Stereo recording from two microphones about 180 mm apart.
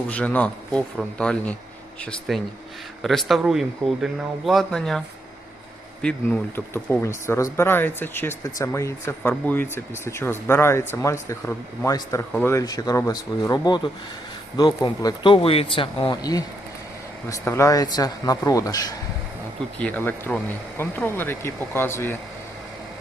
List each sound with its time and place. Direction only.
0.1 s speech: 5° left (ahead or behind)